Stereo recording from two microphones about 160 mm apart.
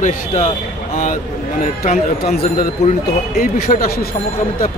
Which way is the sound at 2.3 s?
65° left (ahead or behind).